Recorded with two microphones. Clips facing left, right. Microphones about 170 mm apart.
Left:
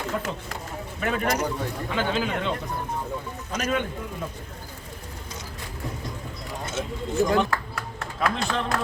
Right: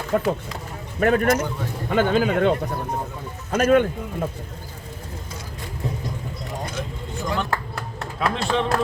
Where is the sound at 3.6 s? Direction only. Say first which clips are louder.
Right 10 dB; 50° right (ahead or behind).